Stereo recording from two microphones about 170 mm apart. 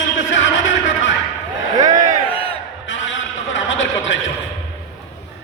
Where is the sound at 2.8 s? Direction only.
90° left.